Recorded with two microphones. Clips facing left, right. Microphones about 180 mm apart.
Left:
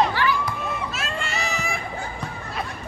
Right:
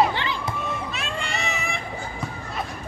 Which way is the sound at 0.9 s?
Centre (ahead or behind).